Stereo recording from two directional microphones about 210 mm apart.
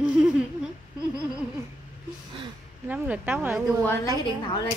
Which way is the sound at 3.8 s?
15° left (ahead or behind).